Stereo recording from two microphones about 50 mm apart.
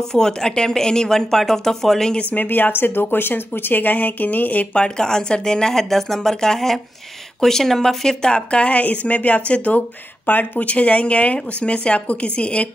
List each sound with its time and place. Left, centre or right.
0.0 s speech: centre
2.3 s speech: left
4.7 s speech: centre